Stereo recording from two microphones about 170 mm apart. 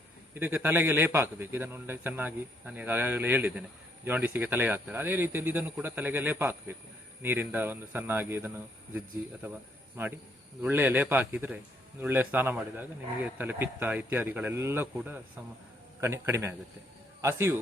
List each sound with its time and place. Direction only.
0.3 s a man's voice: 10° right (ahead or behind)